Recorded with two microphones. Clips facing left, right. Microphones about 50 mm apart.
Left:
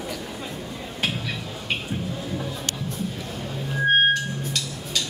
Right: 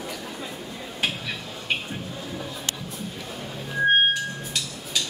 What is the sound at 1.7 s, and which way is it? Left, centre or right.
Music, centre.